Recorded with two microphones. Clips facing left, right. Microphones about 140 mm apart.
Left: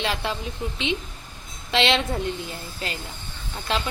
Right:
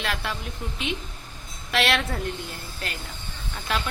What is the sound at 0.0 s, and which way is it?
Speech, 25° left (ahead or behind).